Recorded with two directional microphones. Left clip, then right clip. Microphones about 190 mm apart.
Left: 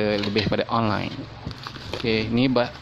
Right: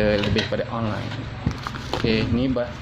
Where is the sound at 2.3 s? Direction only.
45° left (ahead or behind).